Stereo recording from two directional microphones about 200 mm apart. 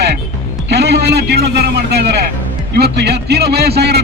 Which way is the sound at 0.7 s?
55° right (ahead or behind).